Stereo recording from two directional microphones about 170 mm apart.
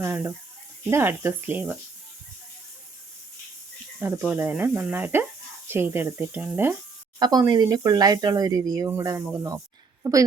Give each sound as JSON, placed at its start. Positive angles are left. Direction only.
{"t": 0.0, "sound": "speech", "side_deg": -15}
{"t": 4.0, "sound": "speech", "side_deg": -10}
{"t": 7.2, "sound": "a woman's voice", "side_deg": -20}